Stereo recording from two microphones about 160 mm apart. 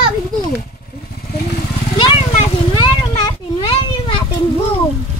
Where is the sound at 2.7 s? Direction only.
30° left (ahead or behind).